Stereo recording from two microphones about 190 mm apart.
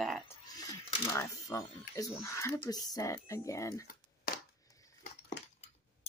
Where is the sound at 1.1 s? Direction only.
15° left (ahead or behind).